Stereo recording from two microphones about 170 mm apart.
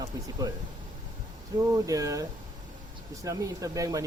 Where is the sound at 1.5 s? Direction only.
20° right (ahead or behind).